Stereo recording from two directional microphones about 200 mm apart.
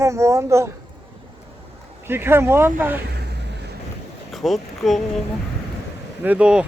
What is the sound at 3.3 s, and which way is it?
Vehicle, 55° right (ahead or behind).